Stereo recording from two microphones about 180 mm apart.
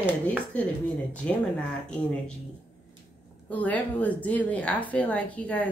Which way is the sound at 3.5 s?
10° left (ahead or behind).